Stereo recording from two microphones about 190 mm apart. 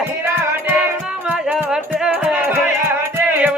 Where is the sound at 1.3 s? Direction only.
5° right (ahead or behind).